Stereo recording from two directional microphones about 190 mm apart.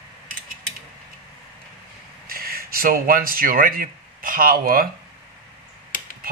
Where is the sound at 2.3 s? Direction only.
50° right (ahead or behind).